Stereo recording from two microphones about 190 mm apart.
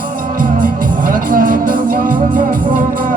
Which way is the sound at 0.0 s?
45° right (ahead or behind).